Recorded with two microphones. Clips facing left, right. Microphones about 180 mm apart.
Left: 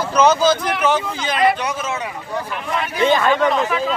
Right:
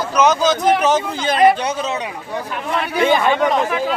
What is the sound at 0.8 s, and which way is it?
Speech, 40° right (ahead or behind).